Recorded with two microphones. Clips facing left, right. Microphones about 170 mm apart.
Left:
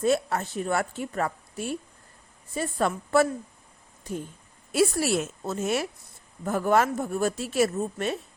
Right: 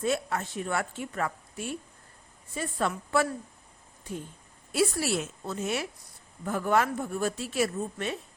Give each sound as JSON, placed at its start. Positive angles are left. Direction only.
{"t": 0.0, "sound": "a woman's voice", "side_deg": 40}
{"t": 4.7, "sound": "a woman's voice", "side_deg": 45}